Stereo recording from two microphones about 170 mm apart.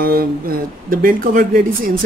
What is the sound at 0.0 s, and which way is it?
A woman's voice, 60° right (ahead or behind).